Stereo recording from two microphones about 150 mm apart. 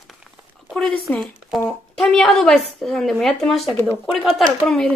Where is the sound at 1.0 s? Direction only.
5° left (ahead or behind).